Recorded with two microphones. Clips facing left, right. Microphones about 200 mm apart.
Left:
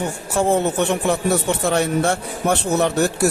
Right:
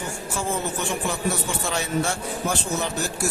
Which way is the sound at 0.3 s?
60° left (ahead or behind).